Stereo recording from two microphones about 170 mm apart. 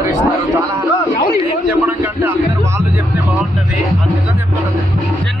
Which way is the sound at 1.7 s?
10° right (ahead or behind).